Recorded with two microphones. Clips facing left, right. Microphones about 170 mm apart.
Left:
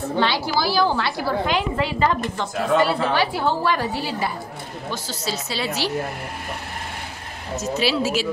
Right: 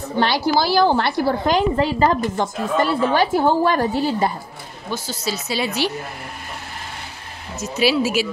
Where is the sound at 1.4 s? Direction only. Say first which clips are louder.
Right 5 dB; 40° right (ahead or behind).